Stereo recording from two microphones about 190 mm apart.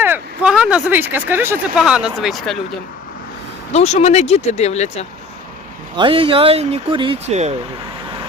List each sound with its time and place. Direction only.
0.0 s speech: 5° right (ahead or behind)
3.7 s speech: 35° left (ahead or behind)
6.0 s speech: 25° right (ahead or behind)